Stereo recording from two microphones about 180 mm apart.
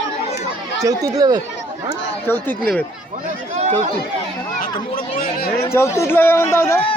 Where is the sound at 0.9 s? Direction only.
20° right (ahead or behind).